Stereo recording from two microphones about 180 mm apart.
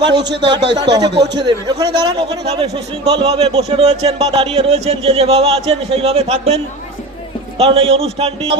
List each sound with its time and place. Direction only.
0.6 s speech: 70° right (ahead or behind)
1.4 s speech: 25° right (ahead or behind)
7.6 s speech: 30° right (ahead or behind)